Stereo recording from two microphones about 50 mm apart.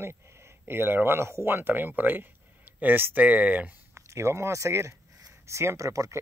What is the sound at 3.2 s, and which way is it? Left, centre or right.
Speech, right.